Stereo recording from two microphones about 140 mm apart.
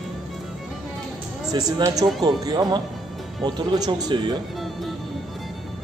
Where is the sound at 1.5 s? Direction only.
25° right (ahead or behind).